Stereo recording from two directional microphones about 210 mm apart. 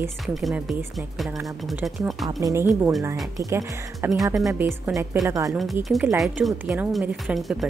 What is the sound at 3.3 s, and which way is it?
Speech, 15° right (ahead or behind).